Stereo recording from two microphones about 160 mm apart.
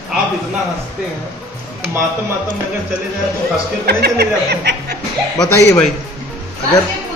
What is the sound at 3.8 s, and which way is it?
Speech, 90° right.